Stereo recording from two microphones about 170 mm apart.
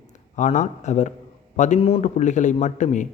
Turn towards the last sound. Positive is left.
turn(degrees=45)  # may be behind; listen again after turning